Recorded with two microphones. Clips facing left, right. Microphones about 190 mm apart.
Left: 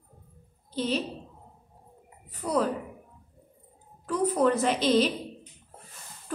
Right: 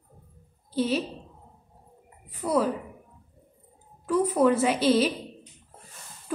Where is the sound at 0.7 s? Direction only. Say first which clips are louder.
Right 3 dB; 10° right (ahead or behind).